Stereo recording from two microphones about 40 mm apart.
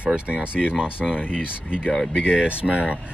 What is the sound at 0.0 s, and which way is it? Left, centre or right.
Speech, right.